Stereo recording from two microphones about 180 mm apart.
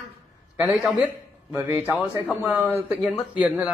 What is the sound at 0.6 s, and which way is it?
A man's voice, 5° right (ahead or behind).